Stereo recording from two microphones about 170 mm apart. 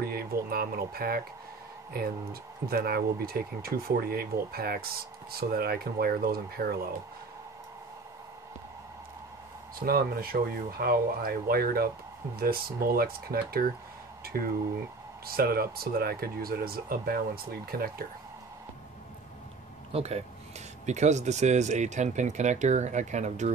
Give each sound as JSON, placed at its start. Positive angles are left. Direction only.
{"t": 0.0, "sound": "speech", "side_deg": -65}
{"t": 9.8, "sound": "speech", "side_deg": -60}
{"t": 19.9, "sound": "speech", "side_deg": -40}